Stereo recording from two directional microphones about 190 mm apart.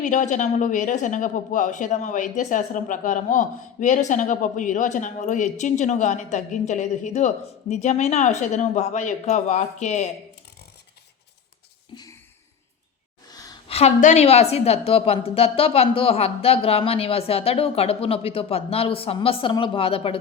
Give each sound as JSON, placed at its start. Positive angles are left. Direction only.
{"t": 0.0, "sound": "a woman's voice", "side_deg": 40}
{"t": 13.7, "sound": "a woman's voice", "side_deg": 35}